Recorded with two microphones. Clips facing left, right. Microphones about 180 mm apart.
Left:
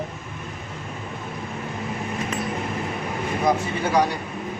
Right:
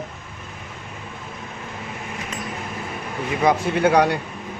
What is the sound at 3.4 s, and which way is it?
Speech, 70° right (ahead or behind).